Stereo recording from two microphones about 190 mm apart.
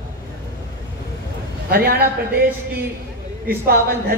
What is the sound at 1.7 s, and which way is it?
Speech, 55° right (ahead or behind).